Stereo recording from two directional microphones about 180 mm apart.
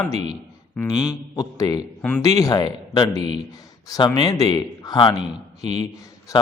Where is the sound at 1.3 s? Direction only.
20° left (ahead or behind).